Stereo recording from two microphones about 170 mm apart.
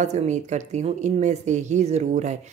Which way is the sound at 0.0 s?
45° right (ahead or behind).